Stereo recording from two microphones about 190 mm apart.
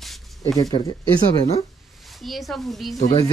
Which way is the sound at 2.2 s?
Centre (ahead or behind).